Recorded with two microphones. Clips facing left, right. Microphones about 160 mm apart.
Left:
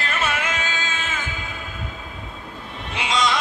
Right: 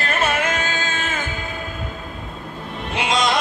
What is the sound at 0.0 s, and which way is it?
Music, 50° right (ahead or behind).